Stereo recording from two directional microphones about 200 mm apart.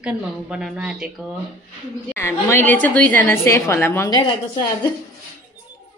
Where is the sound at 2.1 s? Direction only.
10° left (ahead or behind).